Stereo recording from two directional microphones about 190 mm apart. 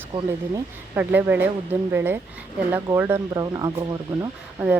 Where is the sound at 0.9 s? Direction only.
10° right (ahead or behind).